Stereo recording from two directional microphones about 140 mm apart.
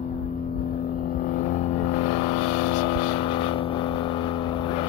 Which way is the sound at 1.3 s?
60° left (ahead or behind).